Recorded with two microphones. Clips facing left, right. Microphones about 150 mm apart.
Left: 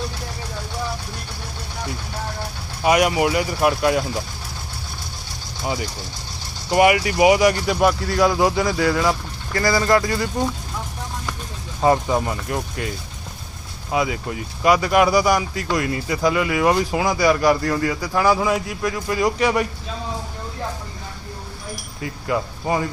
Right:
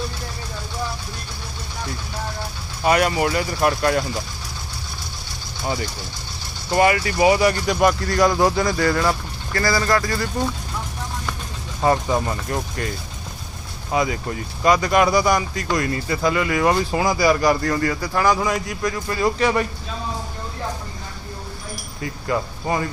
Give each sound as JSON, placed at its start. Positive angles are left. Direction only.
{"t": 2.8, "sound": "speech", "side_deg": 10}
{"t": 5.6, "sound": "speech", "side_deg": 5}
{"t": 9.5, "sound": "speech", "side_deg": 20}
{"t": 11.8, "sound": "speech", "side_deg": 10}
{"t": 13.9, "sound": "speech", "side_deg": 5}
{"t": 22.0, "sound": "speech", "side_deg": 10}